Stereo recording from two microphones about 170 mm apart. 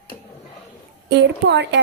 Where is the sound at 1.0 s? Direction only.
90° right.